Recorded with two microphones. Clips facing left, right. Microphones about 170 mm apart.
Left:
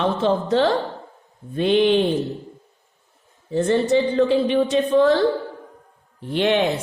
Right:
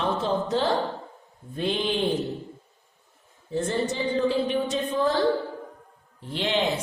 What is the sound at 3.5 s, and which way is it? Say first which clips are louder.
A woman's voice: left 9 dB; 70° left (ahead or behind).